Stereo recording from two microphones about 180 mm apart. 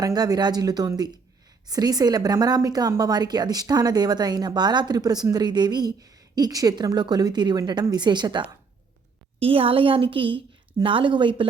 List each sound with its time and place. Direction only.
0.0 s a woman's voice: 20° right (ahead or behind)